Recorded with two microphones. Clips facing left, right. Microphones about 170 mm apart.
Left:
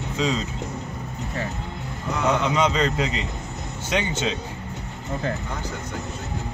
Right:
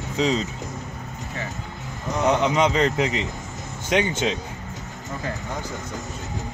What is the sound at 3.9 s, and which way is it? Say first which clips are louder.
Speech: right 3 dB; 15° right (ahead or behind).